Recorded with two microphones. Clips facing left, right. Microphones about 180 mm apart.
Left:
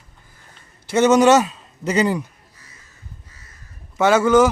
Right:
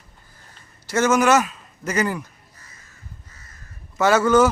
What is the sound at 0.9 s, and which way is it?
A man's voice, 20° left (ahead or behind).